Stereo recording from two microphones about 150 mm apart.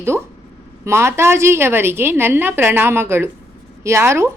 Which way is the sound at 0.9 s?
15° right (ahead or behind).